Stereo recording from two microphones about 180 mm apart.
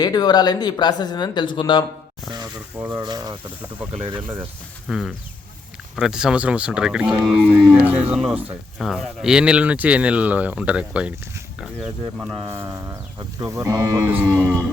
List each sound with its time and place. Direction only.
0.0 s speech: 20° left (ahead or behind)
2.9 s speech: 25° right (ahead or behind)
4.9 s speech: centre (ahead or behind)